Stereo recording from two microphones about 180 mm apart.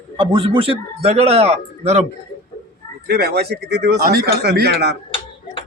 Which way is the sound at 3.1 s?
60° right (ahead or behind).